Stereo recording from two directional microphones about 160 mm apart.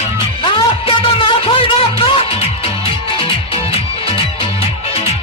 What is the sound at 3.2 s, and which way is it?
Music, 35° left (ahead or behind).